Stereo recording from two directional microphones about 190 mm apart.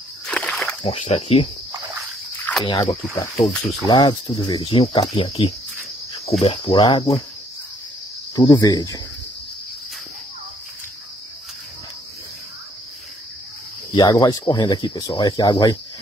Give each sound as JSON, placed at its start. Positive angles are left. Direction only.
{"t": 0.3, "sound": "a sound", "side_deg": 5}
{"t": 0.8, "sound": "speech", "side_deg": 30}
{"t": 2.6, "sound": "speech", "side_deg": 25}
{"t": 8.4, "sound": "speech", "side_deg": 20}
{"t": 13.9, "sound": "speech", "side_deg": 20}